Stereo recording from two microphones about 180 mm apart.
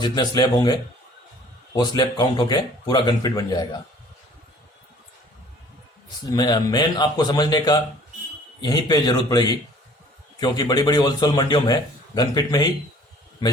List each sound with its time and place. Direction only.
0.0 s a man's voice: 25° left (ahead or behind)
6.3 s a man's voice: 20° left (ahead or behind)